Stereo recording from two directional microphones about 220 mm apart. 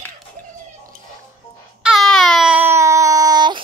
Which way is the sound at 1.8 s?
Centre (ahead or behind).